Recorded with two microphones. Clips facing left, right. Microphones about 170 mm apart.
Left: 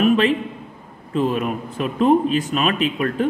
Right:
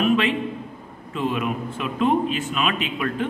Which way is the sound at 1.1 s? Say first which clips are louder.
Left 4 dB; 40° left (ahead or behind).